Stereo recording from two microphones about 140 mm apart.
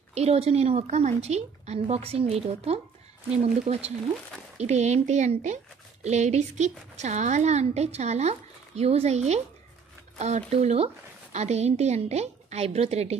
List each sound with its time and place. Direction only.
0.1 s a woman's voice: 45° right (ahead or behind)